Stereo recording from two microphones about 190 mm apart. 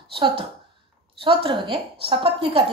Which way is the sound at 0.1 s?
25° right (ahead or behind).